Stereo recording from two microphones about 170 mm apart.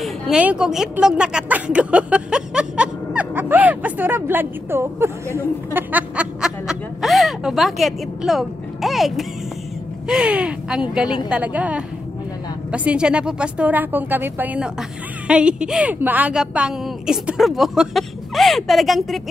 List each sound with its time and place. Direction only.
0.0 s a woman's voice: 5° right (ahead or behind)